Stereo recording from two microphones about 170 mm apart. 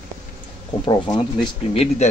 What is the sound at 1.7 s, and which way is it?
Speech, 35° left (ahead or behind).